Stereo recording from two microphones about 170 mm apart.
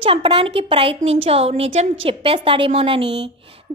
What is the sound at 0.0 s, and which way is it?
A woman's voice, 30° right (ahead or behind).